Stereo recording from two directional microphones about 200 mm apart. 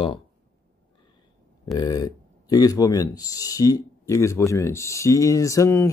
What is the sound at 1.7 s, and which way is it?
Speech, 20° left (ahead or behind).